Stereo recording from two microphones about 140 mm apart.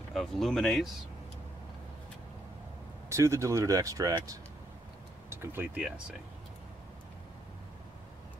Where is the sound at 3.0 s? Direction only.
20° right (ahead or behind).